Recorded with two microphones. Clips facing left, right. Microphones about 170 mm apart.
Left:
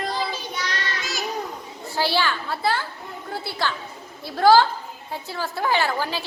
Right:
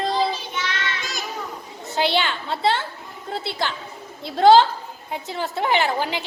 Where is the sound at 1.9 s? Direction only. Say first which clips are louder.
Right 1 dB; 20° right (ahead or behind).